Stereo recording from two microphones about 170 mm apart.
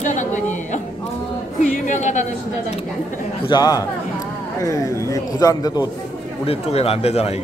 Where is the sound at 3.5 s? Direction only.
20° left (ahead or behind).